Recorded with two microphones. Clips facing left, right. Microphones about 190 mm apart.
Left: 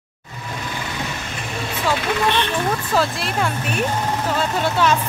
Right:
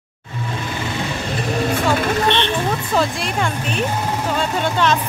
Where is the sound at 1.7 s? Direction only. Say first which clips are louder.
Right 1 dB; 45° right (ahead or behind).